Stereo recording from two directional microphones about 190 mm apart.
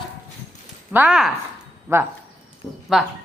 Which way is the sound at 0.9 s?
5° right (ahead or behind).